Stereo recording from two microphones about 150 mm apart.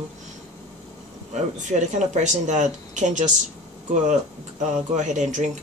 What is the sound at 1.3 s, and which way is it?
Speech, 50° right (ahead or behind).